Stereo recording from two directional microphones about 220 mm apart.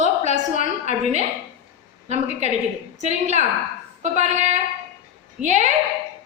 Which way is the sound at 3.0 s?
30° right (ahead or behind).